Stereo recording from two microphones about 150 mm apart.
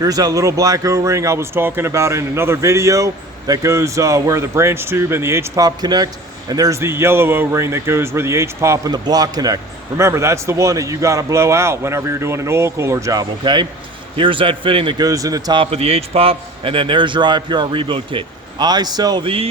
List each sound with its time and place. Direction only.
0.0 s a man's voice: 25° right (ahead or behind)
15.6 s a man's voice: 40° right (ahead or behind)